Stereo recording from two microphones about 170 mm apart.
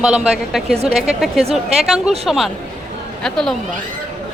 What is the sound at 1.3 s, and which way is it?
Speech, 35° right (ahead or behind).